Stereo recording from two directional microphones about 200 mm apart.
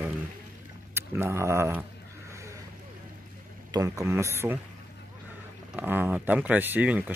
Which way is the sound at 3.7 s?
15° right (ahead or behind).